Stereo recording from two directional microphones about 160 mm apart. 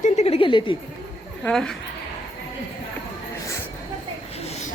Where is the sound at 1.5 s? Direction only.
5° left (ahead or behind).